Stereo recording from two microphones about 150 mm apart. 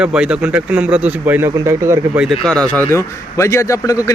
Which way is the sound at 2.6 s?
10° left (ahead or behind).